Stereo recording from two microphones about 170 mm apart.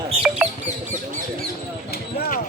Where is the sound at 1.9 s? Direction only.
65° left (ahead or behind).